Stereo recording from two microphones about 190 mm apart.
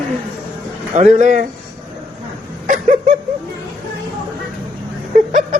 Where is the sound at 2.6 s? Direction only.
40° right (ahead or behind).